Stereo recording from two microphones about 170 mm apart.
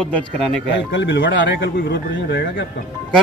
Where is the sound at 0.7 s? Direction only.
90° left.